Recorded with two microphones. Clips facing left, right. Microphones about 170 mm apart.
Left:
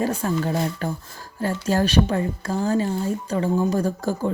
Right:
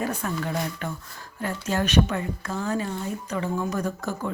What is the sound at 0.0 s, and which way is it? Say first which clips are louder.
A woman's voice: left 5 dB; 30° left (ahead or behind).